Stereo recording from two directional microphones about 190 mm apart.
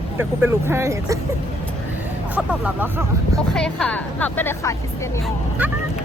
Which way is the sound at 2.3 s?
10° right (ahead or behind).